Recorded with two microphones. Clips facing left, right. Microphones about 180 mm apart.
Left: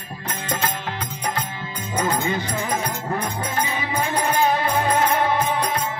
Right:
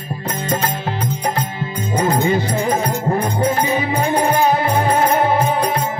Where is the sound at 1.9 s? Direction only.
35° right (ahead or behind).